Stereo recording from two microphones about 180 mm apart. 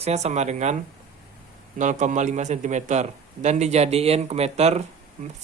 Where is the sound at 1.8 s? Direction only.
45° right (ahead or behind).